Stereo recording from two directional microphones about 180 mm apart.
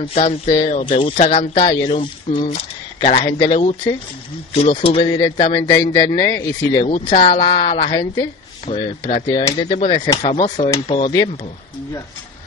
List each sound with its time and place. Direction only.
0.0 s speech: 35° left (ahead or behind)
6.9 s speech: 45° left (ahead or behind)
7.2 s speech: 30° left (ahead or behind)
10.0 s speech: 20° left (ahead or behind)
10.3 s speech: 35° left (ahead or behind)